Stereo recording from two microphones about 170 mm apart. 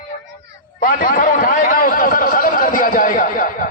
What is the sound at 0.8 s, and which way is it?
A man's voice, 55° left (ahead or behind).